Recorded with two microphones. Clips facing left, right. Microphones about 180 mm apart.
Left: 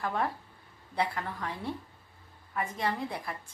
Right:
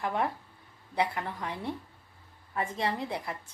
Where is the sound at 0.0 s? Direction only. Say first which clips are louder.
Right 1 dB; 20° right (ahead or behind).